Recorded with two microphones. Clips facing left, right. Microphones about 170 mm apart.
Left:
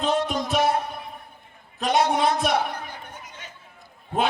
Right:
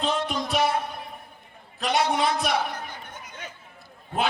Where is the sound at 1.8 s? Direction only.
50° left (ahead or behind).